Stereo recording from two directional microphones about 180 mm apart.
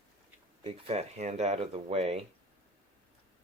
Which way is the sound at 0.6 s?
35° right (ahead or behind).